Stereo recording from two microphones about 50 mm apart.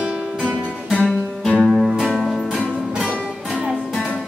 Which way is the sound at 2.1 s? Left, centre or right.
Centre.